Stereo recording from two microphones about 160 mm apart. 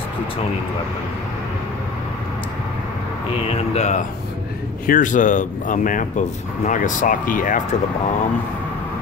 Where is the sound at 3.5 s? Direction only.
45° left (ahead or behind).